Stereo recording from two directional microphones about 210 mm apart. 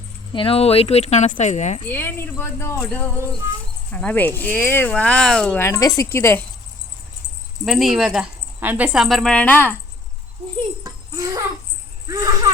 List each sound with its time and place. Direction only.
0.3 s speech: 25° left (ahead or behind)
1.8 s speech: 10° left (ahead or behind)
7.6 s speech: centre (ahead or behind)
10.8 s a sound: 15° right (ahead or behind)
12.0 s speech: 15° right (ahead or behind)